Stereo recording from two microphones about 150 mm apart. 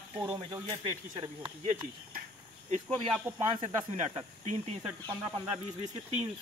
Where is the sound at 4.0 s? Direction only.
45° right (ahead or behind).